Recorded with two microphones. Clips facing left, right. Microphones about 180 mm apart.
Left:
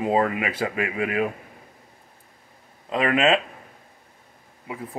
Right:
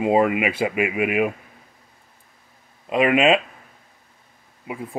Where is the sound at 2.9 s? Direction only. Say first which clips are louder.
Right 3 dB; 15° right (ahead or behind).